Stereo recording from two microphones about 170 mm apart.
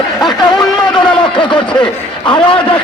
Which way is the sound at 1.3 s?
30° left (ahead or behind).